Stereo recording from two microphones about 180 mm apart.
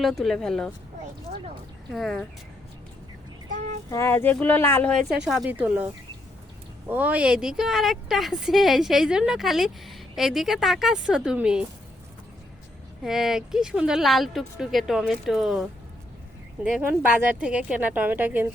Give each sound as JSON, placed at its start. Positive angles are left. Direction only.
{"t": 0.0, "sound": "a woman's voice", "side_deg": 0}
{"t": 1.9, "sound": "a woman's voice", "side_deg": 0}
{"t": 3.5, "sound": "child singing", "side_deg": -40}
{"t": 3.8, "sound": "a woman's voice", "side_deg": 15}
{"t": 13.0, "sound": "a woman's voice", "side_deg": 0}
{"t": 16.6, "sound": "a woman's voice", "side_deg": -5}